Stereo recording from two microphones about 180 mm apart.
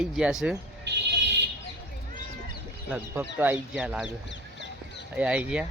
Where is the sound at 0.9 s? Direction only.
75° right (ahead or behind).